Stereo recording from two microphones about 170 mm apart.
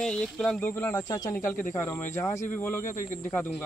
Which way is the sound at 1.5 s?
50° left (ahead or behind).